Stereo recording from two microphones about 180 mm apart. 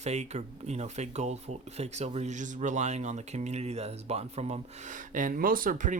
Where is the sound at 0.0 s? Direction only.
40° right (ahead or behind).